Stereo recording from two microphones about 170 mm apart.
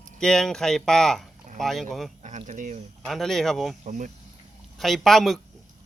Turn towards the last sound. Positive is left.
turn(degrees=0)  # may be behind; listen again after turning